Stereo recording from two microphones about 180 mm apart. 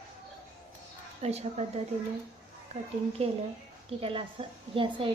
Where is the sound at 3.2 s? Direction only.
35° right (ahead or behind).